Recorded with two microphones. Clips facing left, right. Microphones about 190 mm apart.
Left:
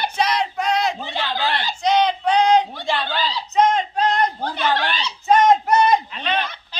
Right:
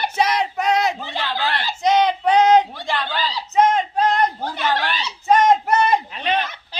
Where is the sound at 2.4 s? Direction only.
45° right (ahead or behind).